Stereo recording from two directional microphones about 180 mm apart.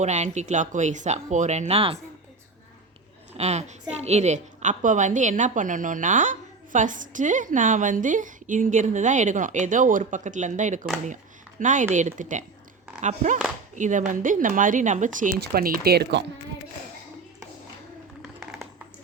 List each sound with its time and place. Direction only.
0.0 s speech: 40° right (ahead or behind)
3.3 s a woman's voice: 35° right (ahead or behind); by 16.2 s 60° right (ahead or behind)
18.3 s a sound: 5° right (ahead or behind)